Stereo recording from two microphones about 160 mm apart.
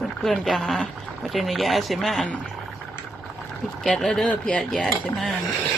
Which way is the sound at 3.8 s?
5° left (ahead or behind).